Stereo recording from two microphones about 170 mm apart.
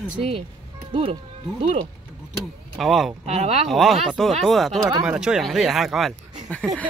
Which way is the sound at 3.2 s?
40° right (ahead or behind).